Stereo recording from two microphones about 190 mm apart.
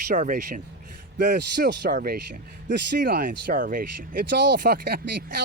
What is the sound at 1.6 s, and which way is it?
Speech, 60° right (ahead or behind).